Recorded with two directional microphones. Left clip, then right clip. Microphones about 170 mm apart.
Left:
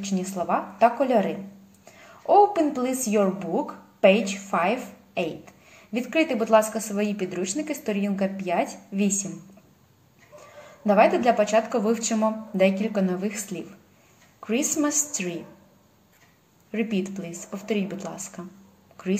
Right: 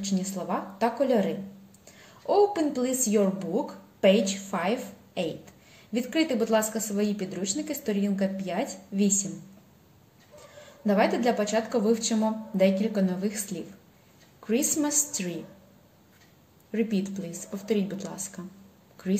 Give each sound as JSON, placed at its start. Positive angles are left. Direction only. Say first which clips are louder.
{"t": 0.0, "sound": "a woman's voice", "louder": "left 4 dB", "side_deg": -30}
{"t": 10.9, "sound": "a woman's voice", "louder": "left 6 dB", "side_deg": -25}
{"t": 16.7, "sound": "a woman's voice", "louder": "left 1 dB", "side_deg": -30}